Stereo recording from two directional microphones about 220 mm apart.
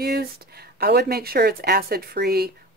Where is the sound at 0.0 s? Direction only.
45° right (ahead or behind).